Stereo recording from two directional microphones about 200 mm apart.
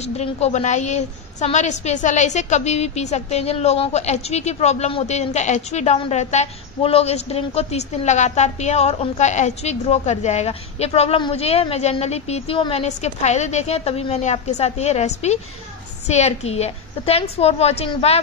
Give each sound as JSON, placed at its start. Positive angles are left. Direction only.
{"t": 0.0, "sound": "a woman's voice", "side_deg": 30}